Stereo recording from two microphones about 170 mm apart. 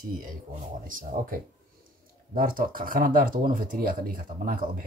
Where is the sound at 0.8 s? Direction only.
55° right (ahead or behind).